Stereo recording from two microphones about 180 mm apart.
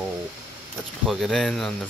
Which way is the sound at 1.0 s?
Centre (ahead or behind).